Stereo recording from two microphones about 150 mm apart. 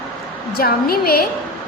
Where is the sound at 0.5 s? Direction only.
90° left.